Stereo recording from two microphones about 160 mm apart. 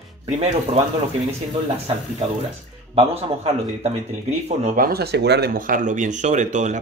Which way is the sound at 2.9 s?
40° right (ahead or behind).